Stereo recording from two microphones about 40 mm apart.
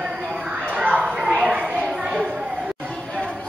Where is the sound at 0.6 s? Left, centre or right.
Right.